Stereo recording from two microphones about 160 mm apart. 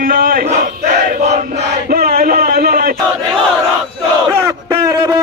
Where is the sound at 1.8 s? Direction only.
70° right (ahead or behind).